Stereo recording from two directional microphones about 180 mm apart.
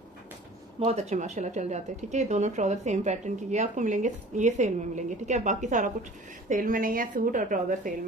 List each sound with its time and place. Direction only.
0.7 s a woman's voice: 40° right (ahead or behind)